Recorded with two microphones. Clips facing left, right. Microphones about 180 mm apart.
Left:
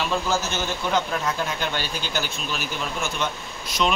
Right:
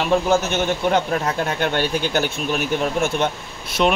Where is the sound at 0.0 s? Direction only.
60° right (ahead or behind).